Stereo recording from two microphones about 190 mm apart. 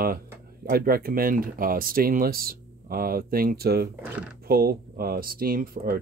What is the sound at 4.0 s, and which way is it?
Speech, 5° right (ahead or behind).